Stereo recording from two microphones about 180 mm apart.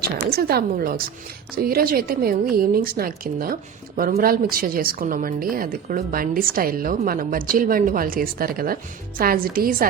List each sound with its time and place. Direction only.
0.0 s a woman's voice: 60° right (ahead or behind)